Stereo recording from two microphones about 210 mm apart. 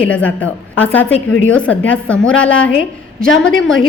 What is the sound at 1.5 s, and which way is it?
A woman's voice, 5° left (ahead or behind).